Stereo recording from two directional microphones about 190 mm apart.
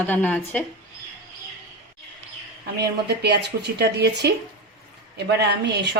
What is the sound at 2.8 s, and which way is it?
Speech, 60° right (ahead or behind).